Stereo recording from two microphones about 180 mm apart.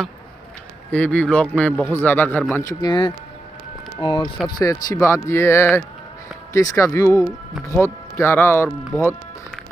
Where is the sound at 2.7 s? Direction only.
25° left (ahead or behind).